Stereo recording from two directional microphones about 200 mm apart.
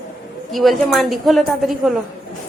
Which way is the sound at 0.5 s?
Centre (ahead or behind).